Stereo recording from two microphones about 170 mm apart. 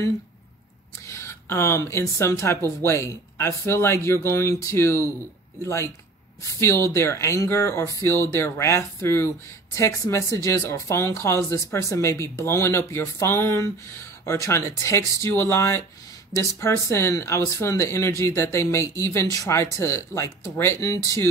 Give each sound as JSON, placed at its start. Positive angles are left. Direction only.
{"t": 1.0, "sound": "speech", "side_deg": 15}
{"t": 6.6, "sound": "speech", "side_deg": 15}